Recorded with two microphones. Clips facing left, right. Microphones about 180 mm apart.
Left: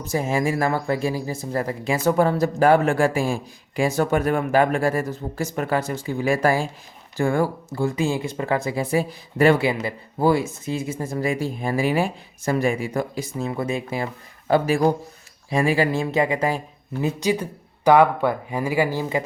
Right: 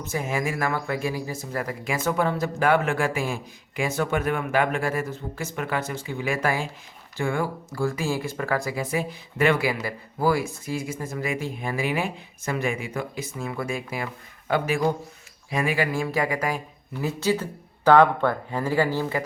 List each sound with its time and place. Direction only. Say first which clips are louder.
0.0 s a man's voice: left 5 dB; 35° left (ahead or behind)
7.7 s a man's voice: left 3 dB; 20° left (ahead or behind)